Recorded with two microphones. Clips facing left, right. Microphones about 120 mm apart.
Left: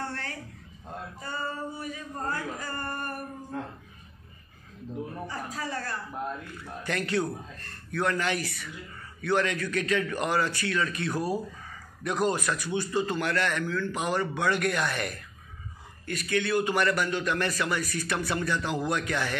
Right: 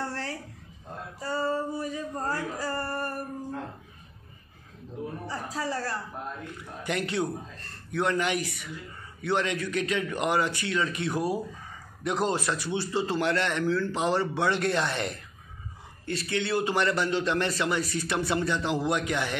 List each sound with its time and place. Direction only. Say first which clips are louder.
0.0 s a sound: right 2 dB; 30° right (ahead or behind)
1.2 s male singing: right 7 dB; 35° right (ahead or behind)
5.2 s music: right 2 dB; 30° right (ahead or behind)
6.6 s a man's voice: right 2 dB; 20° right (ahead or behind)